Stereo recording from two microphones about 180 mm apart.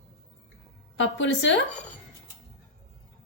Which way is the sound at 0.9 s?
90° left.